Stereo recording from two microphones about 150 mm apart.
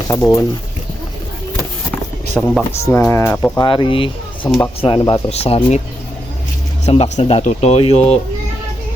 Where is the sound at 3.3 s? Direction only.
5° left (ahead or behind).